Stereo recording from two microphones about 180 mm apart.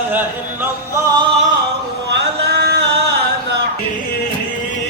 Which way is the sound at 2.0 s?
70° right (ahead or behind).